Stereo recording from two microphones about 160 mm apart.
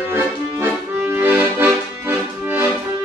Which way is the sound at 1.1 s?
10° right (ahead or behind).